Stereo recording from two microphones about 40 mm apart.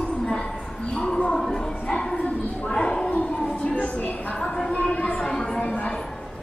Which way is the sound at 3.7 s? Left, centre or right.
Left.